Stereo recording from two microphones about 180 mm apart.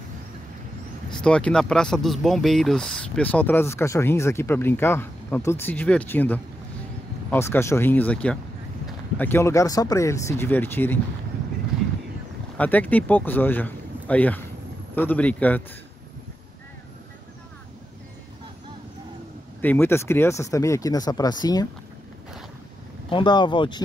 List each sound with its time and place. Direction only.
1.2 s speech: 5° left (ahead or behind)
12.5 s speech: 10° left (ahead or behind)
19.6 s speech: 10° left (ahead or behind)
23.0 s speech: 25° left (ahead or behind)